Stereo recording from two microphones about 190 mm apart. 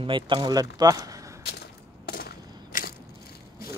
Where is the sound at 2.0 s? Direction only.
50° left (ahead or behind).